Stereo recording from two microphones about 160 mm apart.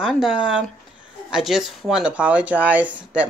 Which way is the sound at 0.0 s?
5° right (ahead or behind).